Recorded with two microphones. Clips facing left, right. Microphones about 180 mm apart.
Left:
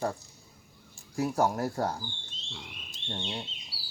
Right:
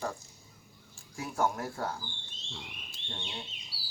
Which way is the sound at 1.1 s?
35° left (ahead or behind).